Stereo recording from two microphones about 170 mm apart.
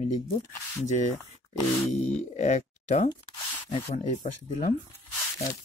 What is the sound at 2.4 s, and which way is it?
Speech, 45° left (ahead or behind).